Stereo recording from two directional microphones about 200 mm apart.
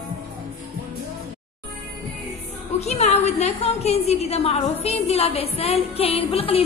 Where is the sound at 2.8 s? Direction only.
35° left (ahead or behind).